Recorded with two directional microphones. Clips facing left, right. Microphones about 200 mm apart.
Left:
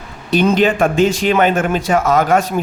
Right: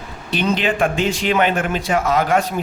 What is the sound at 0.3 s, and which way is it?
Speech, 45° left (ahead or behind).